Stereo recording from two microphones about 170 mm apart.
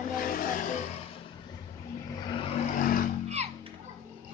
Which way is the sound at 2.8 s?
55° left (ahead or behind).